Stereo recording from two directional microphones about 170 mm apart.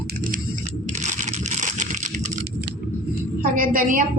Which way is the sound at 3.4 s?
55° right (ahead or behind).